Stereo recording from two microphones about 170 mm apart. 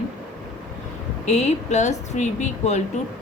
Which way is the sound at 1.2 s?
40° left (ahead or behind).